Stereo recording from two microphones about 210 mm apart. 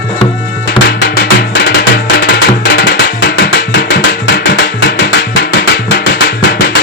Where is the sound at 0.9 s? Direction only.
50° left (ahead or behind).